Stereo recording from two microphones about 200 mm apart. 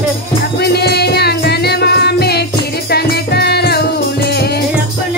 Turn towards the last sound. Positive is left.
turn(degrees=55)  # may be behind; listen again after turning